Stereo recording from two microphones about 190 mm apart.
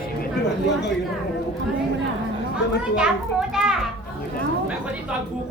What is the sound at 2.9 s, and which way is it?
A woman's voice, 5° right (ahead or behind).